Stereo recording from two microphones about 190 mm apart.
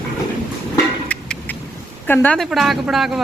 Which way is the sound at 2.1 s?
10° left (ahead or behind).